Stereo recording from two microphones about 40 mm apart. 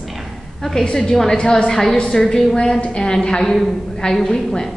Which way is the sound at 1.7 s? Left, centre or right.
Centre.